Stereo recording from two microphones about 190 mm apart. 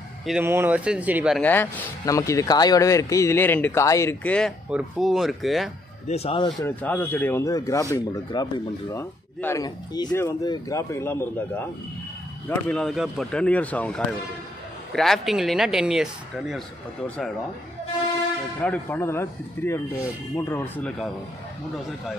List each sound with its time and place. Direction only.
0.3 s speech: 10° right (ahead or behind)
1.4 s speech: 10° left (ahead or behind)
6.0 s speech: 30° left (ahead or behind)
6.6 s speech: 10° left (ahead or behind)
18.6 s speech: 10° left (ahead or behind)